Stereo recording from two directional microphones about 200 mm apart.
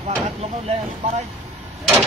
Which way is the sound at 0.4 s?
30° right (ahead or behind).